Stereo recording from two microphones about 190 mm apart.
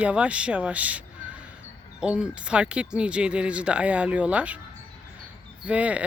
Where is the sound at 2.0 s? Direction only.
5° right (ahead or behind).